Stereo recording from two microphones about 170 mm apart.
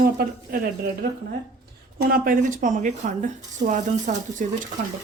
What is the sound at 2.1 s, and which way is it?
Speech, 55° right (ahead or behind).